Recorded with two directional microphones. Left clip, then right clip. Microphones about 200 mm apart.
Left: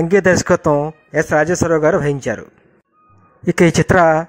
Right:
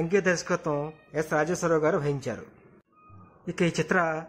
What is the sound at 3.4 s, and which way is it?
Speech, 45° left (ahead or behind).